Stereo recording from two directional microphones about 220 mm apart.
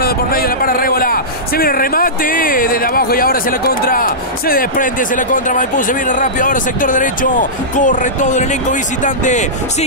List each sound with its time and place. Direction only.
0.0 s a man's voice: 45° left (ahead or behind)